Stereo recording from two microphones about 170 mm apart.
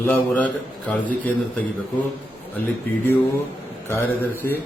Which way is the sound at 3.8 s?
10° left (ahead or behind).